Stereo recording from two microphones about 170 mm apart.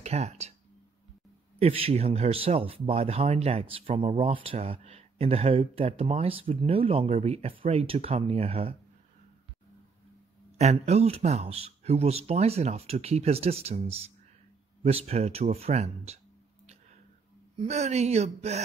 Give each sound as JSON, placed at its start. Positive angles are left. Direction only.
{"t": 0.0, "sound": "speech", "side_deg": -40}
{"t": 1.6, "sound": "speech", "side_deg": -35}
{"t": 10.6, "sound": "speech", "side_deg": -40}
{"t": 17.6, "sound": "speech", "side_deg": -40}